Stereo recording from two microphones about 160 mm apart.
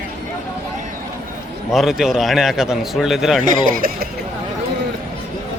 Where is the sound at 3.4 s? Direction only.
60° right (ahead or behind).